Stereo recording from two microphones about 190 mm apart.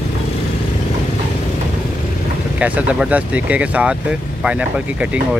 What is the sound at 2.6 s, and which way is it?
Speech, 5° right (ahead or behind).